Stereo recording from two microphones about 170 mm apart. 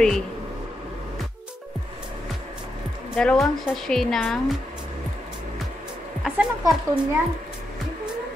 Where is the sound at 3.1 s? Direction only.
5° left (ahead or behind).